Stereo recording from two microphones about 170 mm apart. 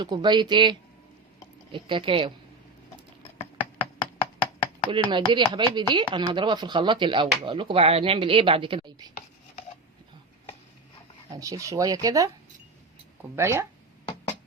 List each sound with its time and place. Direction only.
0.0 s speech: 25° right (ahead or behind)
3.8 s a sound: 30° left (ahead or behind)
4.9 s speech: 30° right (ahead or behind)
11.3 s speech: 20° right (ahead or behind)
13.3 s speech: 15° right (ahead or behind)